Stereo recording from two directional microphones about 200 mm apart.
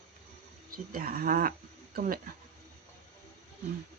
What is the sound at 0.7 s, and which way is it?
Speech, 45° right (ahead or behind).